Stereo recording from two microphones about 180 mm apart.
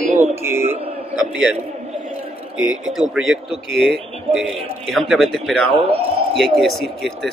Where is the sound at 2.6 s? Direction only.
5° right (ahead or behind).